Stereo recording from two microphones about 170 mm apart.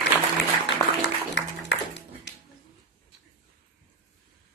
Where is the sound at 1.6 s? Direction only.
85° left.